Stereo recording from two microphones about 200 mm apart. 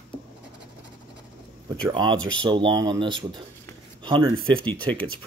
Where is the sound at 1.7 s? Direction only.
20° right (ahead or behind).